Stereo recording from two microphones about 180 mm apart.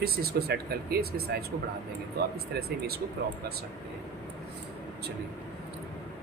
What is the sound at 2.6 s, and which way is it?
Speech, 60° right (ahead or behind).